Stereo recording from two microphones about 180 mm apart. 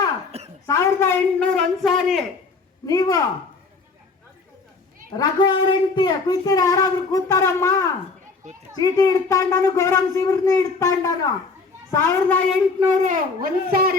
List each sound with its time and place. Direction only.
0.3 s a sound: 35° right (ahead or behind)
0.7 s a man's voice: 15° left (ahead or behind)
2.8 s speech: 20° left (ahead or behind)
5.1 s speech: 20° left (ahead or behind)
8.4 s a child's voice: 45° right (ahead or behind)
8.8 s speech: 20° left (ahead or behind)
12.9 s a child's voice: 45° right (ahead or behind)